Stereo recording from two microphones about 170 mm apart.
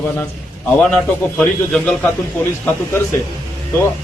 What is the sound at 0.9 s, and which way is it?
Speech, 5° left (ahead or behind).